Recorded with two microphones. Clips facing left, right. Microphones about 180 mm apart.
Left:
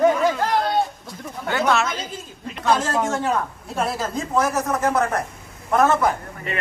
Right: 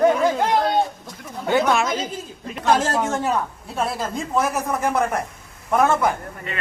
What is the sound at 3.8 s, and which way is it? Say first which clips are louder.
Speech: even; centre (ahead or behind).